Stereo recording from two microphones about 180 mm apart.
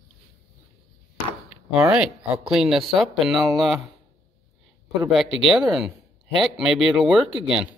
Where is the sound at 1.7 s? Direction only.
15° right (ahead or behind).